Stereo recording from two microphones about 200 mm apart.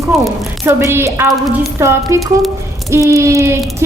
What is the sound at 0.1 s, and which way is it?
Speech, centre (ahead or behind).